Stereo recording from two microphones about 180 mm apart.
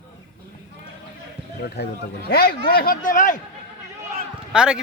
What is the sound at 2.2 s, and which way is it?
A man's voice, 55° left (ahead or behind).